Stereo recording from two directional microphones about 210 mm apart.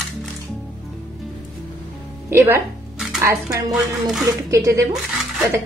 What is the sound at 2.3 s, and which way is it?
Music, 10° right (ahead or behind).